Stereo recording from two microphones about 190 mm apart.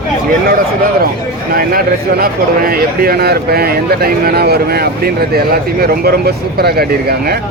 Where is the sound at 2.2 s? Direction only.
50° right (ahead or behind).